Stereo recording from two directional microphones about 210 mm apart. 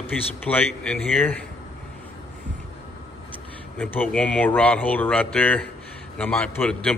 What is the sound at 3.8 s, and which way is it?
A man's voice, 5° left (ahead or behind).